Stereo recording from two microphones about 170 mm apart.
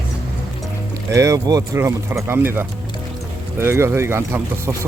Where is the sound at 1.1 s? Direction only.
20° right (ahead or behind).